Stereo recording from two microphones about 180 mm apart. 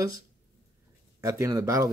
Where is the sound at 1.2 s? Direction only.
15° right (ahead or behind).